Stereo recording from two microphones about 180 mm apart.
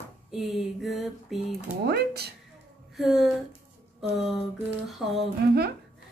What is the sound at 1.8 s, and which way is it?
Speech, 65° right (ahead or behind).